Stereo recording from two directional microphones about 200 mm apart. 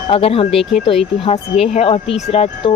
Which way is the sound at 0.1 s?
30° left (ahead or behind).